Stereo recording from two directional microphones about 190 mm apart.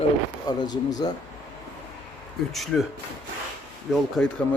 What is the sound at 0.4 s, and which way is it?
Speech, 20° left (ahead or behind).